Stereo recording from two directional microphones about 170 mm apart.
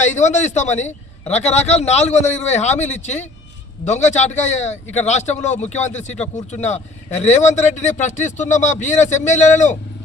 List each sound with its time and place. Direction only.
0.0 s a man's voice: 45° left (ahead or behind)